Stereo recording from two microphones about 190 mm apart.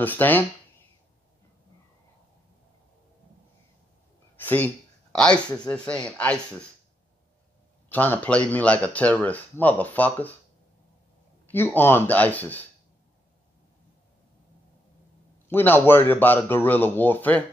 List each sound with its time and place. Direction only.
0.0 s speech: 10° left (ahead or behind)
4.4 s a sound: 10° left (ahead or behind)
5.1 s speech: 5° left (ahead or behind)
7.9 s speech: 10° left (ahead or behind)
11.4 s speech: 10° left (ahead or behind)
15.4 s speech: 10° left (ahead or behind)